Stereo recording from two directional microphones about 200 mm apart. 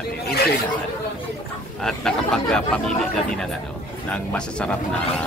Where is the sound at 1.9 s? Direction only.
5° left (ahead or behind).